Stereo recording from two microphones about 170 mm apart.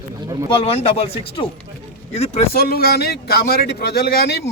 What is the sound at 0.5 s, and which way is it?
Speech, 35° left (ahead or behind).